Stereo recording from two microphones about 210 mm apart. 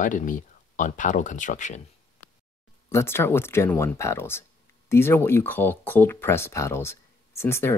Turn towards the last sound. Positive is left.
turn(degrees=10)  # may be behind; listen again after turning